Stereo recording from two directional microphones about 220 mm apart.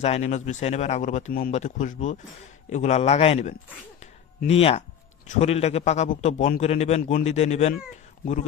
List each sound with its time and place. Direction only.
0.0 s a man's voice: 30° left (ahead or behind)